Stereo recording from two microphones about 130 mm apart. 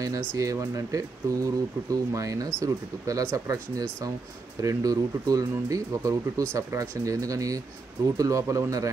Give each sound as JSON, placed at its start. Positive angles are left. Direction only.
{"t": 0.0, "sound": "speech", "side_deg": -25}